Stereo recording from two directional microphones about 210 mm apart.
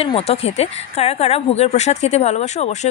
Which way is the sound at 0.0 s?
30° left (ahead or behind).